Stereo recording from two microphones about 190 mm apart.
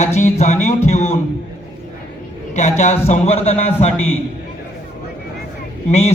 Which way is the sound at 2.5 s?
35° left (ahead or behind).